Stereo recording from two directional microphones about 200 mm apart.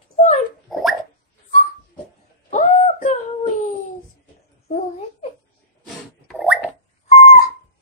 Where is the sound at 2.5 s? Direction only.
35° left (ahead or behind).